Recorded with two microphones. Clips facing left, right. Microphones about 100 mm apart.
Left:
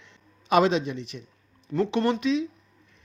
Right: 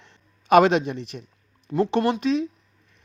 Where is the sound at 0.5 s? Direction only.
60° right (ahead or behind).